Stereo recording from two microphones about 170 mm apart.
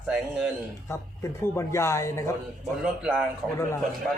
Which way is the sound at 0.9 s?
15° left (ahead or behind).